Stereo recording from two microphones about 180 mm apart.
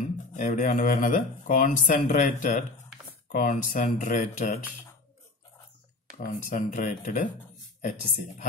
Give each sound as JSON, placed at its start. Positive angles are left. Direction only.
{"t": 0.3, "sound": "speech", "side_deg": 45}
{"t": 6.1, "sound": "speech", "side_deg": 45}